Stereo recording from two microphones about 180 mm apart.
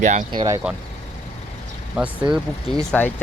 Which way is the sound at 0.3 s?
20° right (ahead or behind).